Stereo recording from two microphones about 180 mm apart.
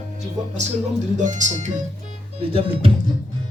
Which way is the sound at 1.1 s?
45° right (ahead or behind).